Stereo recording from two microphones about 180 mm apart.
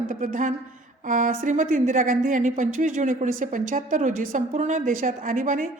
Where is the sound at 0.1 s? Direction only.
45° right (ahead or behind).